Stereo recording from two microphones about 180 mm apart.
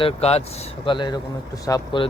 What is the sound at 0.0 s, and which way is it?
Speech, 35° left (ahead or behind).